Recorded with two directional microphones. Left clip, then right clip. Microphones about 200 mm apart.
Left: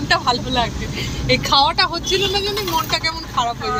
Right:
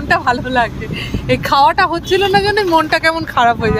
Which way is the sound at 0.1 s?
30° right (ahead or behind).